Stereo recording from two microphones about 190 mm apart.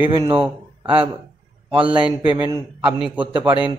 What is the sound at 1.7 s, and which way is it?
Speech, 25° right (ahead or behind).